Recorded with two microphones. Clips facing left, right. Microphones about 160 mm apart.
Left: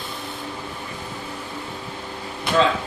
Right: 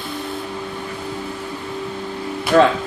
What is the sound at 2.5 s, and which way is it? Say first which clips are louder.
Speech: right 6 dB; 60° right (ahead or behind).